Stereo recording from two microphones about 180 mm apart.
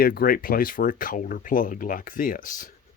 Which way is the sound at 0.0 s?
55° left (ahead or behind).